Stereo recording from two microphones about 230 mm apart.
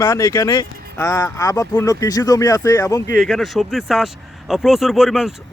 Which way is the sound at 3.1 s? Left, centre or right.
Centre.